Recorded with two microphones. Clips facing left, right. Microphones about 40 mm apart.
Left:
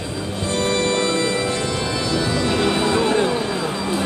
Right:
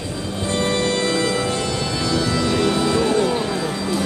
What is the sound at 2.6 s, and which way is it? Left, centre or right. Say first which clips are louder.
Music: left 1 dB; left.